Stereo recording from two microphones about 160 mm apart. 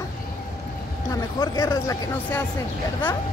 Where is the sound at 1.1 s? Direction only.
20° left (ahead or behind).